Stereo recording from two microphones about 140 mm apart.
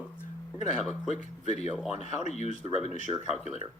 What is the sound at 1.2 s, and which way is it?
Speech, 55° left (ahead or behind).